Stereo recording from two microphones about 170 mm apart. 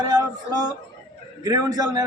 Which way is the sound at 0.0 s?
25° right (ahead or behind).